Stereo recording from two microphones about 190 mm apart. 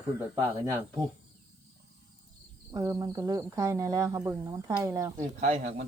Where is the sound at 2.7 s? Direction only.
20° right (ahead or behind).